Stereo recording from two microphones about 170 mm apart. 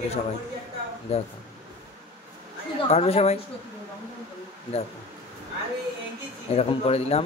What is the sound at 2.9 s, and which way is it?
Speech, 35° left (ahead or behind).